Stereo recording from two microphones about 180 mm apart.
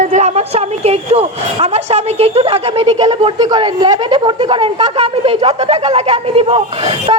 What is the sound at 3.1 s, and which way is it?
A woman's voice, 20° right (ahead or behind).